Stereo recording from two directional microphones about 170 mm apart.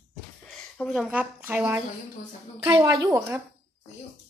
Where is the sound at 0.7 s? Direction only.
Centre (ahead or behind); by 3.3 s 15° right (ahead or behind).